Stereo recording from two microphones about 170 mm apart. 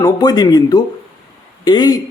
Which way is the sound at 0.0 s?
25° left (ahead or behind).